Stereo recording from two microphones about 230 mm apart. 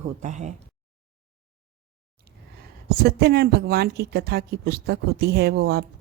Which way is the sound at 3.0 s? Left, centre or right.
Right.